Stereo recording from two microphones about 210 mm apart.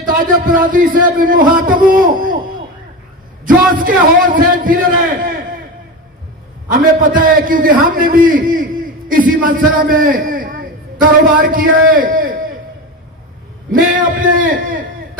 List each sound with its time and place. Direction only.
0.0 s a man's voice: 40° right (ahead or behind)
3.4 s a man's voice: 40° right (ahead or behind)
6.7 s a man's voice: 40° right (ahead or behind)
11.9 s a sound: 40° right (ahead or behind)
13.7 s a man's voice: 40° right (ahead or behind)